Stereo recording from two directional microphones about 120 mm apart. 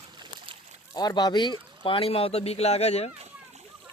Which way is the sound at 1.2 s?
35° left (ahead or behind).